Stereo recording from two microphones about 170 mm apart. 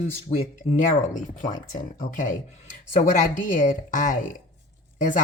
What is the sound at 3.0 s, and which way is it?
Speech, 50° left (ahead or behind).